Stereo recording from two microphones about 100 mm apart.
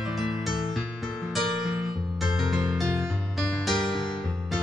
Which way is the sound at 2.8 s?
30° right (ahead or behind).